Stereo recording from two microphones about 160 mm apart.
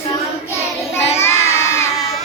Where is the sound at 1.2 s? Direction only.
15° left (ahead or behind).